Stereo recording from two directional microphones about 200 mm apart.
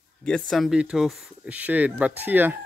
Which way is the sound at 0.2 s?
5° left (ahead or behind).